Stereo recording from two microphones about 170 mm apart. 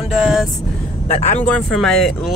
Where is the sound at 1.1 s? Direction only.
40° left (ahead or behind).